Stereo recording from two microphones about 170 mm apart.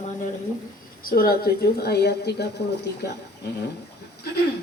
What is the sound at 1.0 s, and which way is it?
A woman's voice, 60° left (ahead or behind).